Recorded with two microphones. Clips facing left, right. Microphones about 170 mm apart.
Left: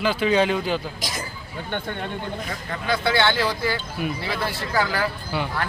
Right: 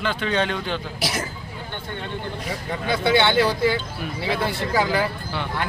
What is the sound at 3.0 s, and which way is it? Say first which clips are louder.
Speech: right 4 dB; 20° right (ahead or behind).